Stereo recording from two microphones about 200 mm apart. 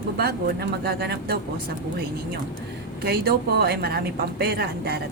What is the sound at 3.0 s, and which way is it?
A woman's voice, 50° right (ahead or behind).